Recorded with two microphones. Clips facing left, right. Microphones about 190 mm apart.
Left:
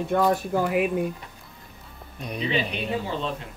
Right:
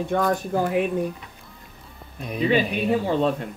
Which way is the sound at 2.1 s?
Centre (ahead or behind).